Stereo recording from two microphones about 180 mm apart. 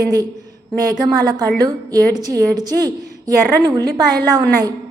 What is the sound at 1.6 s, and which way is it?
A woman's voice, 20° right (ahead or behind).